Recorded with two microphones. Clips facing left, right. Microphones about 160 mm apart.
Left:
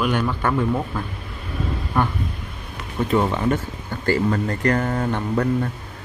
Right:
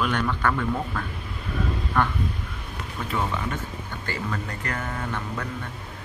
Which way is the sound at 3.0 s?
35° left (ahead or behind).